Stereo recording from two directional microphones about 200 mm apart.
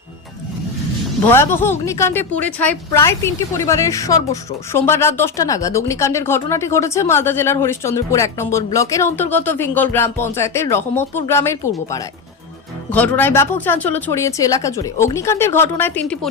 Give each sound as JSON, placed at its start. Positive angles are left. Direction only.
{"t": 1.3, "sound": "speech", "side_deg": 10}
{"t": 12.9, "sound": "speech", "side_deg": 10}